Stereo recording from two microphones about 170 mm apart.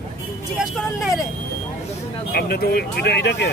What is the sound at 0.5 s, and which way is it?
Speech, centre (ahead or behind).